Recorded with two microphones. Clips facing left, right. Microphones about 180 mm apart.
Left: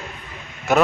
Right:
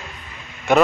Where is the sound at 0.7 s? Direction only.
5° left (ahead or behind).